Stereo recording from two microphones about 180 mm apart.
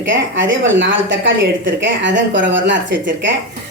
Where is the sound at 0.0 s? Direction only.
90° right.